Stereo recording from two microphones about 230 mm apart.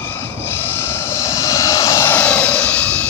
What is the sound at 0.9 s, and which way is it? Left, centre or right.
Vehicle, centre.